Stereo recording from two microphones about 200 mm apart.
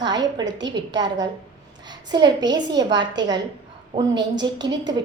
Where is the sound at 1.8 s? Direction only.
20° right (ahead or behind).